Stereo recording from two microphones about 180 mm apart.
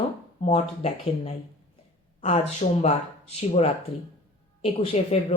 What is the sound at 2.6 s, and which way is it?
Speech, 40° left (ahead or behind).